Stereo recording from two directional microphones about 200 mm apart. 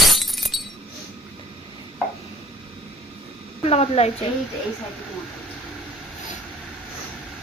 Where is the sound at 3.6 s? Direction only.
30° left (ahead or behind).